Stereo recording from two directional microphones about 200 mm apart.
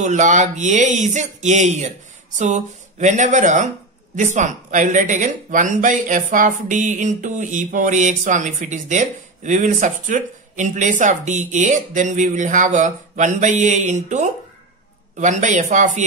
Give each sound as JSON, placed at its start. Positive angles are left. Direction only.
{"t": 0.0, "sound": "speech", "side_deg": -40}